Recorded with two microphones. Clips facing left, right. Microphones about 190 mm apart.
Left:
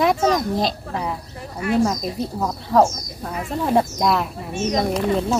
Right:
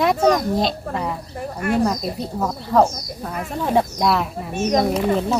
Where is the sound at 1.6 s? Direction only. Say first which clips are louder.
Even; 50° right (ahead or behind).